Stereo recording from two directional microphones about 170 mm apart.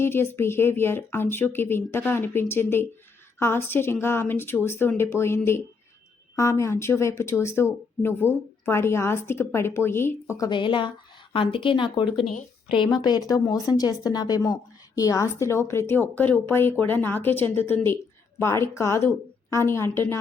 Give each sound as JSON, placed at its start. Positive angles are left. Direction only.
{"t": 0.0, "sound": "a woman's voice", "side_deg": 15}